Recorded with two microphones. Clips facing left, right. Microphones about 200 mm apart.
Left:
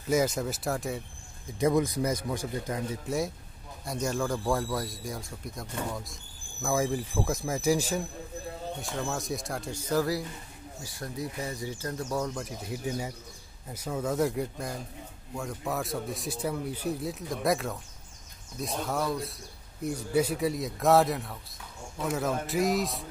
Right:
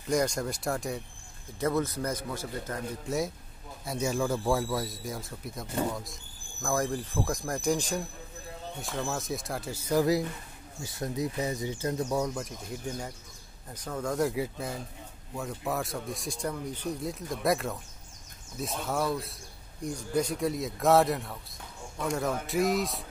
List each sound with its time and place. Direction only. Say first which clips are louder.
0.1 s speech: left 1 dB; 5° left (ahead or behind)
1.6 s a man's voice: left 3 dB; 15° left (ahead or behind)
3.1 s speech: right 2 dB; centre (ahead or behind); by 12.3 s 15° right (ahead or behind)
12.4 s speech: left 1 dB; 5° left (ahead or behind)